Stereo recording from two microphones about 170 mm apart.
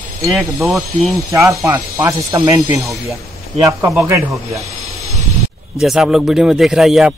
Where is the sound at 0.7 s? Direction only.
Centre (ahead or behind).